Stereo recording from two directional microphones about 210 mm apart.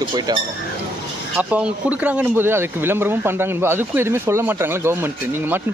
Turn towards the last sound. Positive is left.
turn(degrees=-10)  # may be behind; listen again after turning